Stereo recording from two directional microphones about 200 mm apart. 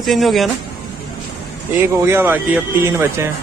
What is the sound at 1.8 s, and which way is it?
Speech, 15° right (ahead or behind).